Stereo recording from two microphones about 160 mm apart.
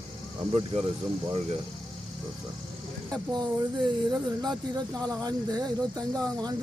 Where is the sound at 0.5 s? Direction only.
40° right (ahead or behind).